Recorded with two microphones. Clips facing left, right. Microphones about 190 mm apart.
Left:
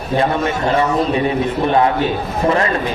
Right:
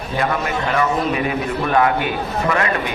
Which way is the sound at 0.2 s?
25° left (ahead or behind).